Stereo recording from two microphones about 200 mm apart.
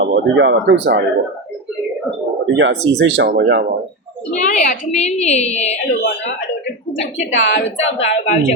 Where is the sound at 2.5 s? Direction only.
65° right (ahead or behind).